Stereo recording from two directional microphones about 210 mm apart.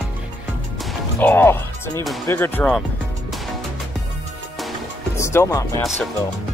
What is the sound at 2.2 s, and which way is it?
Speech, 10° left (ahead or behind).